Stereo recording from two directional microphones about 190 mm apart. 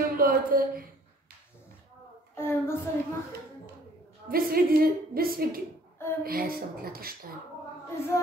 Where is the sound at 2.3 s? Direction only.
10° left (ahead or behind).